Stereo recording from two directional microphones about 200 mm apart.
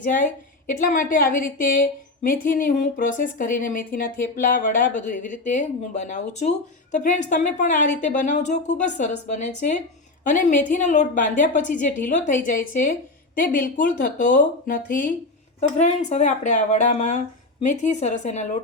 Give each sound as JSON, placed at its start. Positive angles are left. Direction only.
{"t": 0.7, "sound": "a woman's voice", "side_deg": 40}